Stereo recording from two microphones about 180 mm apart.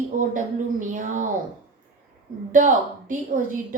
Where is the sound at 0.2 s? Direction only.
45° right (ahead or behind).